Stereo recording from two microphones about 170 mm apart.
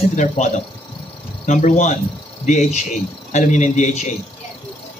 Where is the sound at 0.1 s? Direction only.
45° left (ahead or behind).